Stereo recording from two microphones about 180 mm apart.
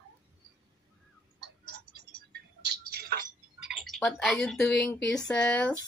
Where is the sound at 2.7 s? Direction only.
60° right (ahead or behind).